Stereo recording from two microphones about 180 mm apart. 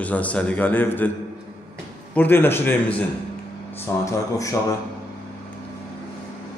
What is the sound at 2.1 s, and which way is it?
A man's voice, 10° left (ahead or behind).